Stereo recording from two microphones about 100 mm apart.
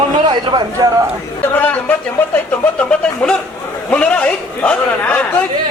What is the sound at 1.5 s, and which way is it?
A man's voice, 20° left (ahead or behind).